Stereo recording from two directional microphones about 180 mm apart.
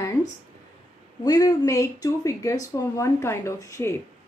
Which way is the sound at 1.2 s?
20° left (ahead or behind).